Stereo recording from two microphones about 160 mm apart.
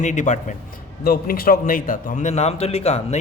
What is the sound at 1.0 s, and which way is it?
A man's voice, 70° left (ahead or behind).